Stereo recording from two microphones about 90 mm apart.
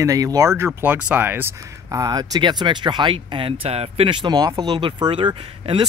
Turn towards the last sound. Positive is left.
turn(degrees=-65)  # may be behind; listen again after turning